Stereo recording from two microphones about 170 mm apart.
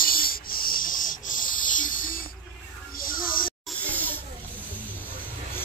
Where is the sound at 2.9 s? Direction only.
55° left (ahead or behind).